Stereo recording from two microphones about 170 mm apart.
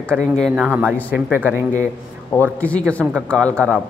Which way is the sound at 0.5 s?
10° right (ahead or behind).